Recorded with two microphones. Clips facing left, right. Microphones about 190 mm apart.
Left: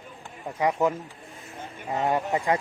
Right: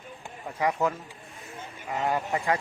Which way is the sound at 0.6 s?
20° left (ahead or behind).